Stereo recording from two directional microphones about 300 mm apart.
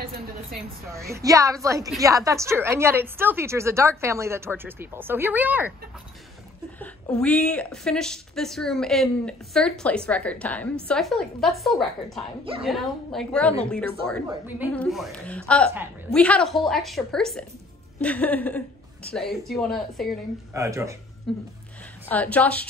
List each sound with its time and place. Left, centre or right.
0.0 s a sound: right
0.8 s a woman's voice: centre
6.8 s a woman's voice: centre
20.5 s a woman's voice: centre
21.3 s a woman's voice: centre